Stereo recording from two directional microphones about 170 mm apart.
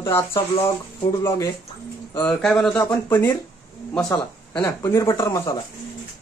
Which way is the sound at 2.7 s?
15° left (ahead or behind).